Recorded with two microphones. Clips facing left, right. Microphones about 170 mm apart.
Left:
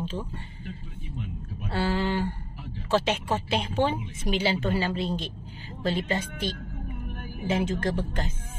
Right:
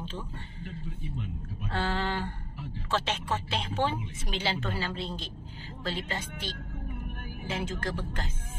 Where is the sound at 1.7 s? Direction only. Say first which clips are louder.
Left 4 dB; 10° left (ahead or behind).